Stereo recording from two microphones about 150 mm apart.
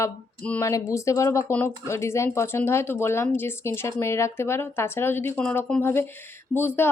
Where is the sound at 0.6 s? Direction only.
20° left (ahead or behind).